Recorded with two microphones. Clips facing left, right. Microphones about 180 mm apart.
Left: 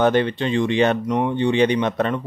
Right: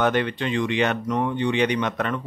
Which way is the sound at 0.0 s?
30° left (ahead or behind).